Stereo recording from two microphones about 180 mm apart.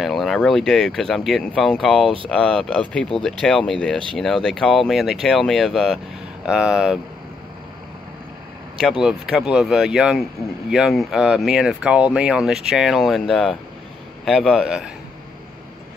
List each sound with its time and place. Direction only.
0.0 s speech: centre (ahead or behind)
9.0 s speech: 5° right (ahead or behind)